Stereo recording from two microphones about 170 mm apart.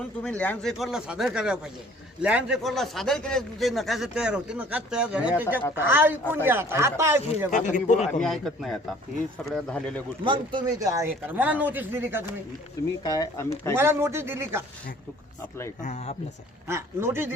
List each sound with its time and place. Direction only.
0.2 s a man's voice: 5° left (ahead or behind); by 7.5 s 15° right (ahead or behind)
7.5 s a man's voice: 45° left (ahead or behind)
8.2 s a man's voice: centre (ahead or behind)
10.2 s a man's voice: 25° right (ahead or behind); by 12.2 s 10° right (ahead or behind)
13.0 s speech: 20° left (ahead or behind)
13.7 s a man's voice: 15° right (ahead or behind)
15.8 s a man's voice: 45° left (ahead or behind)
16.6 s a man's voice: 15° right (ahead or behind)